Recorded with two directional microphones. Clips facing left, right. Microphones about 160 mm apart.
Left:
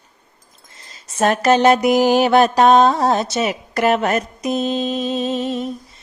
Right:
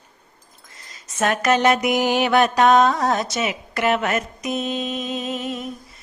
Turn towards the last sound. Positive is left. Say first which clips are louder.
# left 6 dB
turn(degrees=30)  # may be behind; listen again after turning